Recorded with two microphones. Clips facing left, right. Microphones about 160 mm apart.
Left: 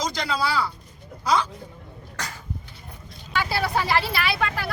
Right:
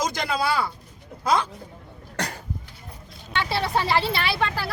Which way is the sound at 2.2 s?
65° right (ahead or behind).